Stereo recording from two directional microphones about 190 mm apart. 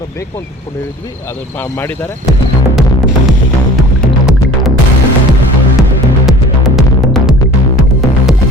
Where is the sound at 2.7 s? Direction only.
Centre (ahead or behind).